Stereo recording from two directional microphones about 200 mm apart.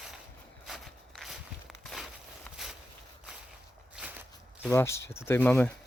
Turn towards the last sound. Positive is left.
turn(degrees=10)  # may be behind; listen again after turning